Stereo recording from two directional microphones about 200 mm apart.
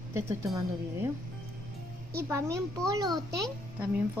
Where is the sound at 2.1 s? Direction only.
15° right (ahead or behind).